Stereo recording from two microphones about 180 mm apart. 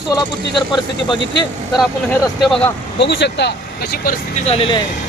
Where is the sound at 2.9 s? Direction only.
70° left (ahead or behind).